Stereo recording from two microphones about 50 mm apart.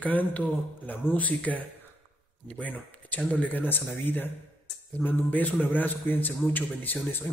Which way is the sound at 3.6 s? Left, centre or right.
Left.